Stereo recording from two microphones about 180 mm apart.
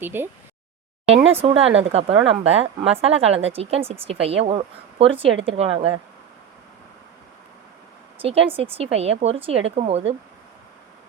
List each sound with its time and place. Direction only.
0.0 s speech: 10° right (ahead or behind)
1.0 s a woman's voice: 35° right (ahead or behind)
8.2 s a woman's voice: 30° right (ahead or behind)